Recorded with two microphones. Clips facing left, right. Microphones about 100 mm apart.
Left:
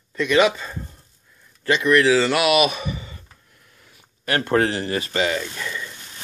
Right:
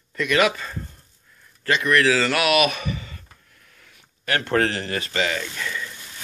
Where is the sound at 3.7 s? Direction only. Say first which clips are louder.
Left 1 dB; 25° left (ahead or behind).